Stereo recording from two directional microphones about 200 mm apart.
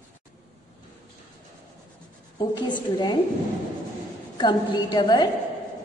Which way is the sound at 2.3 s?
20° left (ahead or behind).